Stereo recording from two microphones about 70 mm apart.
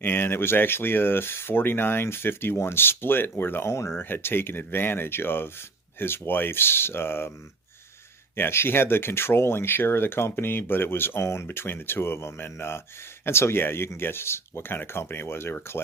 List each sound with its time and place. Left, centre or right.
0.0 s speech: left
8.4 s speech: left